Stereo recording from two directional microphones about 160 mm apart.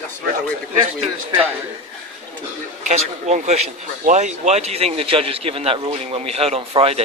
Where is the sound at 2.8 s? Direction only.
45° right (ahead or behind).